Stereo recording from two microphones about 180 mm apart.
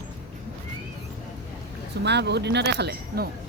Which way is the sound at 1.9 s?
70° right (ahead or behind).